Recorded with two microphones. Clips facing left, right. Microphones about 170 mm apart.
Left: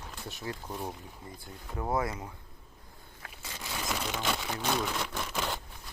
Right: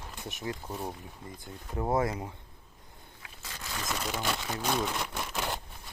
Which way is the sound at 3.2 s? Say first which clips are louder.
Left 6 dB; 50° left (ahead or behind).